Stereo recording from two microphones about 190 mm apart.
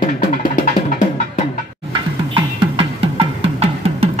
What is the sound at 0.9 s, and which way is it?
Music, 40° left (ahead or behind).